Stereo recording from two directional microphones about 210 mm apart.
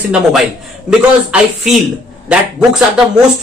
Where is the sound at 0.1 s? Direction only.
Centre (ahead or behind).